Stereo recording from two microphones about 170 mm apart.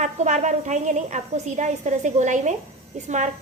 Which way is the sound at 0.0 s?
45° right (ahead or behind).